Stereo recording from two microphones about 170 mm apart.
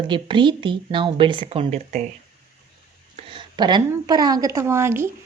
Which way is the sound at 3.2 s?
30° right (ahead or behind).